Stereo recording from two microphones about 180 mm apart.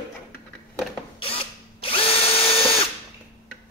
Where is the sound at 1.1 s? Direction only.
30° left (ahead or behind).